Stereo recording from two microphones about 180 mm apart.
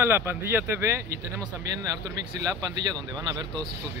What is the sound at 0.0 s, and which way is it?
Speech, 10° right (ahead or behind).